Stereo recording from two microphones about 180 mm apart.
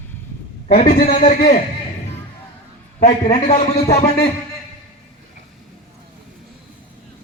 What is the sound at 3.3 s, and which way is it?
Speech, 40° left (ahead or behind).